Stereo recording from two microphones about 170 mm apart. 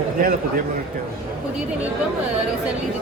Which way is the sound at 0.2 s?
55° right (ahead or behind).